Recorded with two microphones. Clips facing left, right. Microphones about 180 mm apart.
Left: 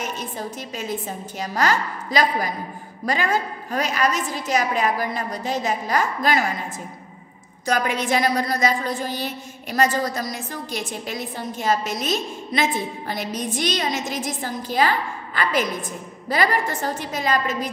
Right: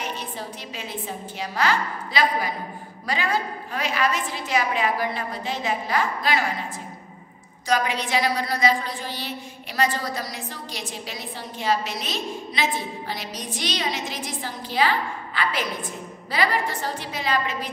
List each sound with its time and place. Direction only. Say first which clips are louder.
0.0 s a woman's voice: left 3 dB; 45° left (ahead or behind)
7.6 s a woman's voice: left 2 dB; 50° left (ahead or behind)